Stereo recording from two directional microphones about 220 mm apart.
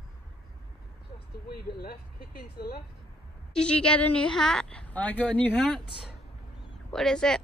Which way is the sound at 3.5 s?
5° left (ahead or behind).